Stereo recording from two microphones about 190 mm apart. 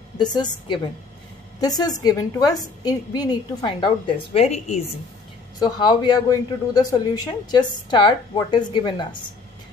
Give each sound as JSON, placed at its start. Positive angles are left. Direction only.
{"t": 0.2, "sound": "speech", "side_deg": 20}
{"t": 5.6, "sound": "speech", "side_deg": 20}